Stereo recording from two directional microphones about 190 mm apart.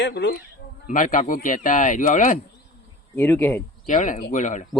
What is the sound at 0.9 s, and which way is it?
Speech, 40° left (ahead or behind).